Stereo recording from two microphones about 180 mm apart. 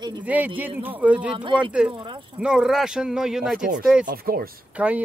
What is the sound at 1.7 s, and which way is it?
Speech, 5° right (ahead or behind).